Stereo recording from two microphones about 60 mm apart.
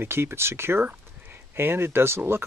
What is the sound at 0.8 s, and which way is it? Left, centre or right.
Speech, right.